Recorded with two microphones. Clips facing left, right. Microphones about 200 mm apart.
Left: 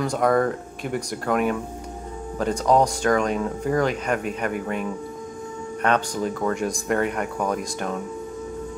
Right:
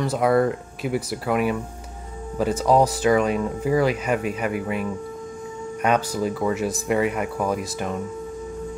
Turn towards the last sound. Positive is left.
turn(degrees=-5)  # may be behind; listen again after turning